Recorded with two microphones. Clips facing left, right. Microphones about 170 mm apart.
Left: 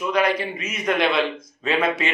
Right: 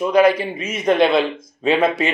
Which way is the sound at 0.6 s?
30° right (ahead or behind).